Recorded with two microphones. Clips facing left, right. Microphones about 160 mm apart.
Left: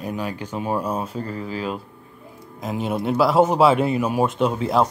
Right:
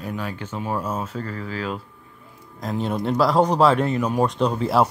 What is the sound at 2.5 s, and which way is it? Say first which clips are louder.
Speech: even; 5° left (ahead or behind).